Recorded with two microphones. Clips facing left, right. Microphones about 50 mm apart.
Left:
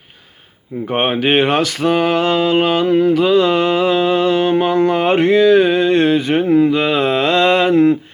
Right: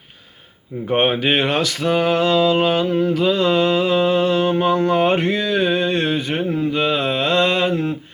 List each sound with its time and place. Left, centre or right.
0.9 s speech: left
1.2 s mantra: left